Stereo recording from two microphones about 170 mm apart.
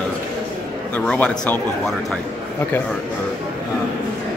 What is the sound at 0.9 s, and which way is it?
A man's voice, 5° left (ahead or behind).